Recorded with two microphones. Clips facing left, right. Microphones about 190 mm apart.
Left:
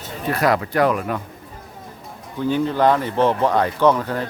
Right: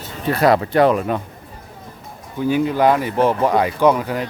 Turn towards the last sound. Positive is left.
turn(degrees=-10)  # may be behind; listen again after turning